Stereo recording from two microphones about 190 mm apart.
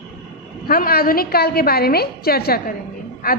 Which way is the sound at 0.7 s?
50° left (ahead or behind).